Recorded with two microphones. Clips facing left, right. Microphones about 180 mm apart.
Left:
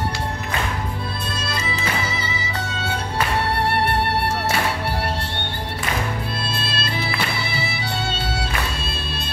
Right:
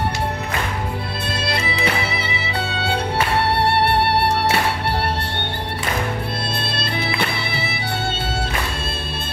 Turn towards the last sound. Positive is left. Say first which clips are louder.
# right 1 dB
turn(degrees=-60)  # may be behind; listen again after turning